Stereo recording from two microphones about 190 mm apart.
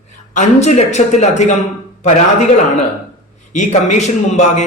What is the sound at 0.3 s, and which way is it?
A man's voice, 35° left (ahead or behind).